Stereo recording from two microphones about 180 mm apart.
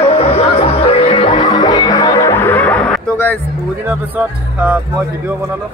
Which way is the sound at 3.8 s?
10° right (ahead or behind).